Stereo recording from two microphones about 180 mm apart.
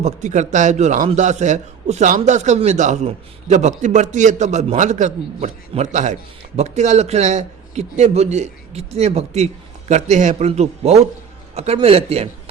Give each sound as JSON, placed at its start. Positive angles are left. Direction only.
{"t": 0.0, "sound": "a man's voice", "side_deg": -40}